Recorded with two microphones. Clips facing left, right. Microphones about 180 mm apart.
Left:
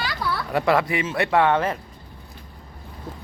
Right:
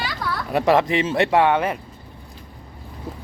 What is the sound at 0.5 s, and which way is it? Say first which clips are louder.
Speech: right 4 dB; 20° right (ahead or behind).